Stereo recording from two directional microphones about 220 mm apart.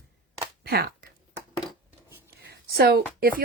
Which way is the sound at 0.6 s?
45° right (ahead or behind).